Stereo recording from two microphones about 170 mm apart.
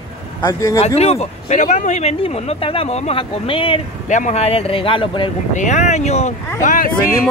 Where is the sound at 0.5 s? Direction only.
20° left (ahead or behind).